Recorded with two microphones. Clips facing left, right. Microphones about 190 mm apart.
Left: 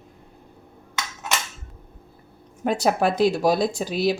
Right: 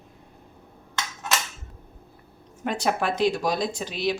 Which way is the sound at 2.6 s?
40° left (ahead or behind).